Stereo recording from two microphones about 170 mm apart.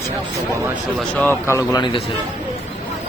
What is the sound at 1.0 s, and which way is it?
Speech, 10° left (ahead or behind).